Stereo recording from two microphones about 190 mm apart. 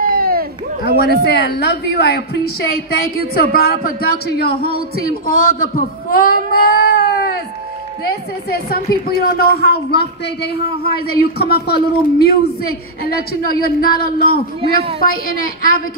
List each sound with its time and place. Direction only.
0.1 s run: 50° right (ahead or behind)
0.8 s a woman's voice: 55° left (ahead or behind)
8.5 s a woman's voice: 55° left (ahead or behind)
14.6 s a woman's voice: 30° right (ahead or behind)
15.2 s a woman's voice: 50° left (ahead or behind)